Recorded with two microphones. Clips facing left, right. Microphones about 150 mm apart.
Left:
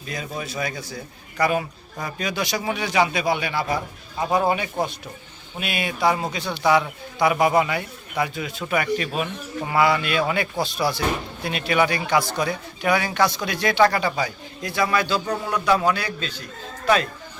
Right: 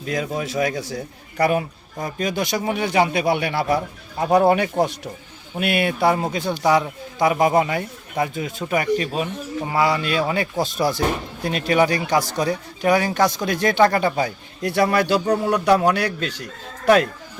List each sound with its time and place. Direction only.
0.0 s speech: 85° right
1.4 s speech: 55° right (ahead or behind)
2.0 s speech: 45° right (ahead or behind); by 4.9 s 70° right (ahead or behind)
5.5 s speech: 60° right (ahead or behind)
6.3 s speech: 45° right (ahead or behind); by 17.1 s 75° right (ahead or behind)